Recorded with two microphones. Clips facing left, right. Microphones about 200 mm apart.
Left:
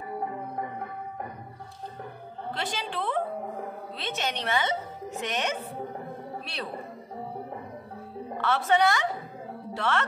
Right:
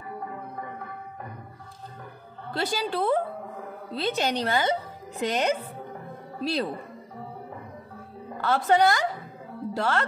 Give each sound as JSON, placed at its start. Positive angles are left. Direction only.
{"t": 2.5, "sound": "a woman's voice", "side_deg": -40}
{"t": 8.4, "sound": "a woman's voice", "side_deg": -40}